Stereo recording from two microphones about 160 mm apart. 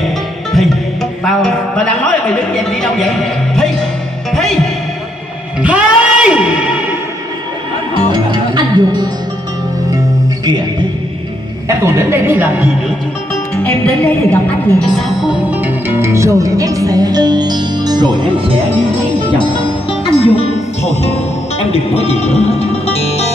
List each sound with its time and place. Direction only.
1.2 s a man's voice: 5° left (ahead or behind)
5.6 s music: 10° right (ahead or behind)
8.1 s music: 25° right (ahead or behind)
11.8 s a woman's voice: 15° right (ahead or behind)
13.6 s a woman's voice: 10° left (ahead or behind); by 18.2 s 25° right (ahead or behind)
19.2 s music: 30° left (ahead or behind)